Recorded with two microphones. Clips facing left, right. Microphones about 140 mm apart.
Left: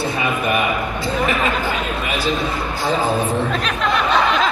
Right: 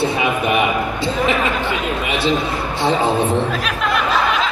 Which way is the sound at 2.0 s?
25° right (ahead or behind).